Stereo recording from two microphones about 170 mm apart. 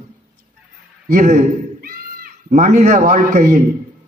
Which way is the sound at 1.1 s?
50° right (ahead or behind).